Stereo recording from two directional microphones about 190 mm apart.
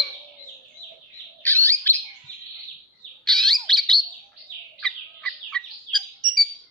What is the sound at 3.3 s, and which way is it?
Bird, centre (ahead or behind).